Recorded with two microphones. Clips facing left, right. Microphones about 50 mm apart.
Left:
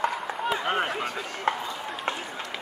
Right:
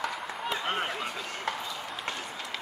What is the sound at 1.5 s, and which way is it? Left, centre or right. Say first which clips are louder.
Run: left 7 dB; left.